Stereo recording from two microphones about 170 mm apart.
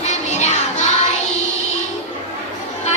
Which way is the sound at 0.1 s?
45° left (ahead or behind).